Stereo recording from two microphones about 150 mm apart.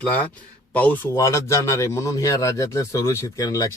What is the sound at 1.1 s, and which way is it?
Speech, 20° left (ahead or behind).